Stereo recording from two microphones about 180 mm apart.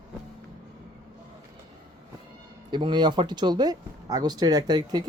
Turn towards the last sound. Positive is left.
turn(degrees=-25)  # may be behind; listen again after turning